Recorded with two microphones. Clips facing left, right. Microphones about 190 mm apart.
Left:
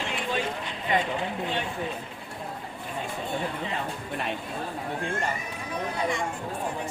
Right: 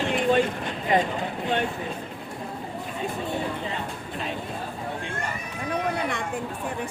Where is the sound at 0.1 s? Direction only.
50° right (ahead or behind).